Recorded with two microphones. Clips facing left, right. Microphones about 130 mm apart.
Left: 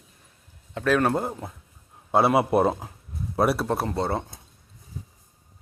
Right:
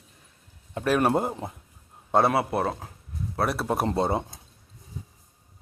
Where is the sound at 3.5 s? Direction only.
Centre (ahead or behind).